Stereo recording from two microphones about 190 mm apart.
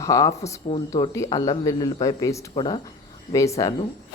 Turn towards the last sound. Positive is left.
turn(degrees=15)  # may be behind; listen again after turning